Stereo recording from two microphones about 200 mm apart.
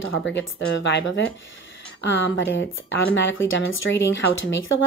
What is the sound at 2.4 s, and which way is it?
Speech, 65° left (ahead or behind).